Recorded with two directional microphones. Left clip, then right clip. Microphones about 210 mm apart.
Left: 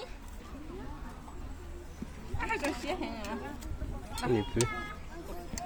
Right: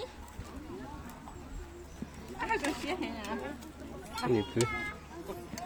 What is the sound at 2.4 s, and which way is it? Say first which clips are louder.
Speech: right 1 dB; 10° left (ahead or behind).